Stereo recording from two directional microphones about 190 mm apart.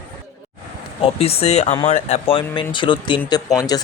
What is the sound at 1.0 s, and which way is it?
Speech, 30° left (ahead or behind).